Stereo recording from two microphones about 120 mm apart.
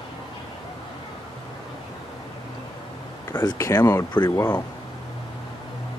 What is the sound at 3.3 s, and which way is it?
Speech, 25° left (ahead or behind).